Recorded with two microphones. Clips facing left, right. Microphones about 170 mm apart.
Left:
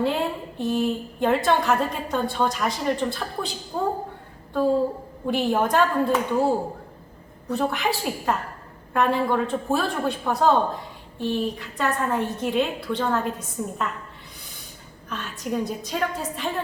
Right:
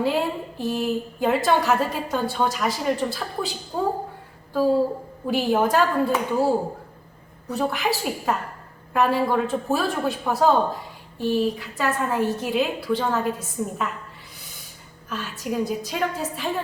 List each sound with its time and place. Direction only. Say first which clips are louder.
0.0 s a woman's voice: right 1 dB; 5° right (ahead or behind)
15.1 s a woman's voice: right 1 dB; 5° right (ahead or behind)